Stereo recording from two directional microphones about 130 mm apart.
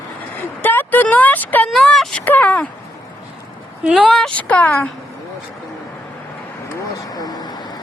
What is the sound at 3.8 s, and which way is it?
Speech, 5° right (ahead or behind).